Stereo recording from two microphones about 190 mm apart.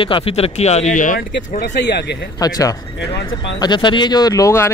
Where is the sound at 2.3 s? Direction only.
20° left (ahead or behind).